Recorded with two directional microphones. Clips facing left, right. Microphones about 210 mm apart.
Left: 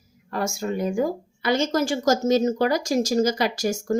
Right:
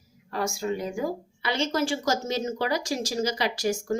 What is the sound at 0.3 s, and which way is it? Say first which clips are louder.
A woman's voice: left 2 dB; 50° left (ahead or behind).